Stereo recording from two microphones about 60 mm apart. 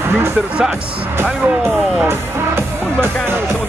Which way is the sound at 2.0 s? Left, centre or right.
Right.